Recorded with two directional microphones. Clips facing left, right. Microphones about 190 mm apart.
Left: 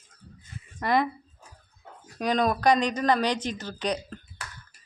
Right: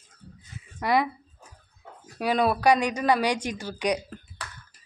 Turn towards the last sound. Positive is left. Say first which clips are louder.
# right 3 dB
turn(degrees=-10)  # may be behind; listen again after turning